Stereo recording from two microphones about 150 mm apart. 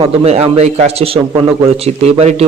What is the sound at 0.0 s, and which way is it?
A man's voice, 40° right (ahead or behind).